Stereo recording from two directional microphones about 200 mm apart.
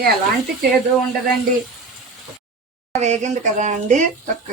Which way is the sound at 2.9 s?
35° right (ahead or behind).